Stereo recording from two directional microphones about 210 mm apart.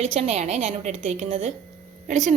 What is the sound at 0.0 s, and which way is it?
A woman's voice, 30° right (ahead or behind).